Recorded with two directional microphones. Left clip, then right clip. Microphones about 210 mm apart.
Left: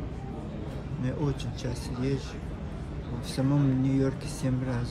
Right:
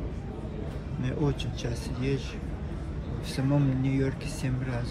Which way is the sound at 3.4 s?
5° left (ahead or behind).